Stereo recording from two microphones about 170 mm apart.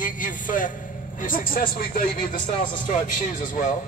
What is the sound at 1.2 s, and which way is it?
A man's voice, 55° left (ahead or behind).